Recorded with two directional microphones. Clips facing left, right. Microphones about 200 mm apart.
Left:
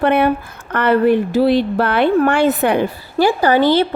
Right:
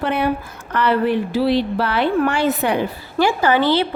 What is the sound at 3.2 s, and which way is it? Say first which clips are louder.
Speech: left 3 dB; 35° left (ahead or behind).